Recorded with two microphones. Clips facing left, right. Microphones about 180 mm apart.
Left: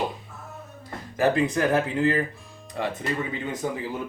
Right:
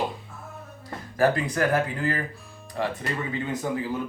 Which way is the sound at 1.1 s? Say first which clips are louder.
Left 1 dB; 20° left (ahead or behind).